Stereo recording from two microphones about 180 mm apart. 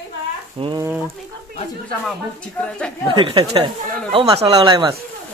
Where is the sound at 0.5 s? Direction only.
30° right (ahead or behind).